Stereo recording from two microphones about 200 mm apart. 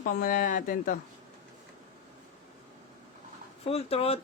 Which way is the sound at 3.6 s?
30° left (ahead or behind).